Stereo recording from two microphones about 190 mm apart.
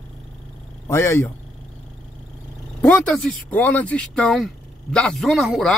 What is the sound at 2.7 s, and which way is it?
Speech, 5° left (ahead or behind).